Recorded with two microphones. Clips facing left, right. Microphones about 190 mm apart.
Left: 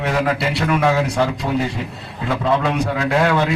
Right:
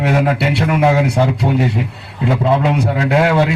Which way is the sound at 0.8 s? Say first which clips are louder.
Right 5 dB; 20° right (ahead or behind).